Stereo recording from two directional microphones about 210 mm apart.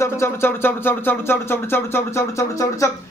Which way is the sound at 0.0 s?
10° left (ahead or behind).